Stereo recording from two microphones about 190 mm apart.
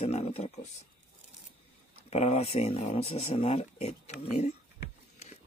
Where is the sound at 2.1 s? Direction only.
35° left (ahead or behind).